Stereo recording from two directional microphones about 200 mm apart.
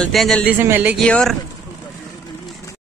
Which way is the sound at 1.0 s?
5° left (ahead or behind).